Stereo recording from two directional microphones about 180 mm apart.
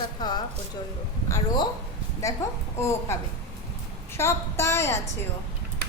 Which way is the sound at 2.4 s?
15° left (ahead or behind).